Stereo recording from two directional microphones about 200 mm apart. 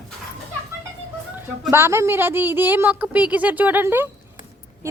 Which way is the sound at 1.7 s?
10° right (ahead or behind).